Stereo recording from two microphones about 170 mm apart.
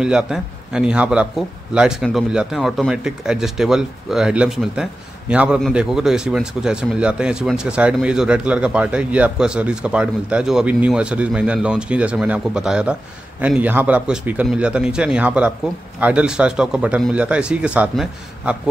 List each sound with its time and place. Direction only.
0.0 s speech: 5° right (ahead or behind)